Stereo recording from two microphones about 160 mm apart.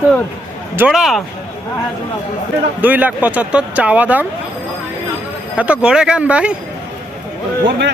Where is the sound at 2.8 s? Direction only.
10° right (ahead or behind).